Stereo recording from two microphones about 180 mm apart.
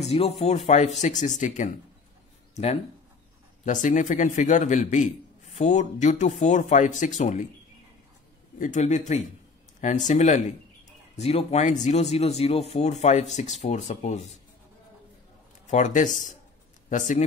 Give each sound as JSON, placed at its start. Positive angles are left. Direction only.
{"t": 0.1, "sound": "a man's voice", "side_deg": 35}
{"t": 8.5, "sound": "speech", "side_deg": 45}
{"t": 15.6, "sound": "speech", "side_deg": 40}